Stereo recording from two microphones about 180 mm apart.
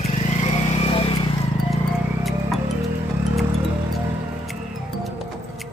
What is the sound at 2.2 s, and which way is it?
Music, centre (ahead or behind).